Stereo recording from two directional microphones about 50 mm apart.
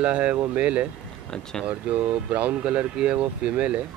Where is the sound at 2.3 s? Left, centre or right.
Right.